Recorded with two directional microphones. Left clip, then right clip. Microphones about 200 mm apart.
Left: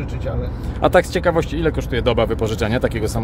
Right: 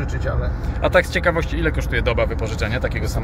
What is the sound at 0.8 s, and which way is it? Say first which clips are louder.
Speech: left 2 dB; 35° left (ahead or behind).